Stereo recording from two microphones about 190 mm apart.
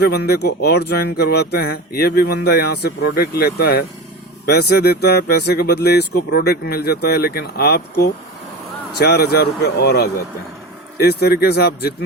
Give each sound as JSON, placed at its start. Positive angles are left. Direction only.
{"t": 0.0, "sound": "speech", "side_deg": 60}